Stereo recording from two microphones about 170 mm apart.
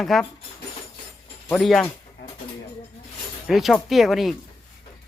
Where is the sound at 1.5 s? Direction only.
Centre (ahead or behind).